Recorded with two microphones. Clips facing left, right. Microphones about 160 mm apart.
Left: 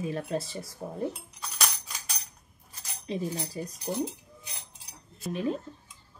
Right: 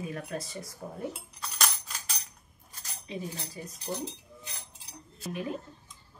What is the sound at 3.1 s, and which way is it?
Speech, 35° left (ahead or behind).